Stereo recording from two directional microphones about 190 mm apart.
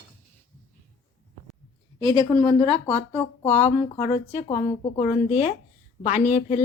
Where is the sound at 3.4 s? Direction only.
35° left (ahead or behind).